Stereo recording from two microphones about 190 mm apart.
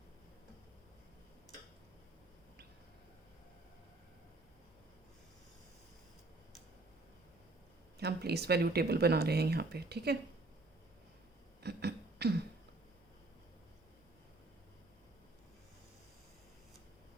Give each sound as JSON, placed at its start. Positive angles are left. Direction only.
{"t": 7.9, "sound": "speech", "side_deg": -60}
{"t": 11.6, "sound": "beatboxing", "side_deg": -60}